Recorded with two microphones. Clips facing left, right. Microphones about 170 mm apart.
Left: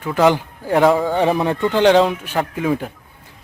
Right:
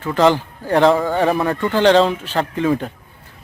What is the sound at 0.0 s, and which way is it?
Speech, 10° left (ahead or behind).